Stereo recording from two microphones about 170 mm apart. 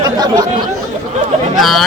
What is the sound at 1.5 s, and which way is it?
Speech, centre (ahead or behind).